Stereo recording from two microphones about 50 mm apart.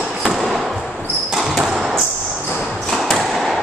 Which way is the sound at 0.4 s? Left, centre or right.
Centre.